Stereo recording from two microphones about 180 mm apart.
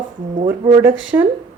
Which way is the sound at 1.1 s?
20° right (ahead or behind).